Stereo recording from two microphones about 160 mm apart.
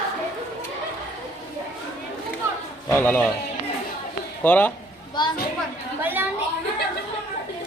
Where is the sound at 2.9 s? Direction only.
15° left (ahead or behind).